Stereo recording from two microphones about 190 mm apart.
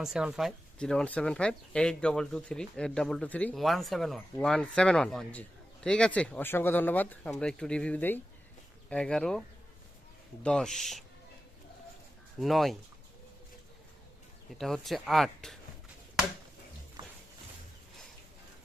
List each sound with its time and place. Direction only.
0.0 s speech: 5° right (ahead or behind)
10.4 s speech: 5° left (ahead or behind)
12.4 s speech: centre (ahead or behind)
14.6 s speech: centre (ahead or behind)
17.0 s a sound: 25° right (ahead or behind)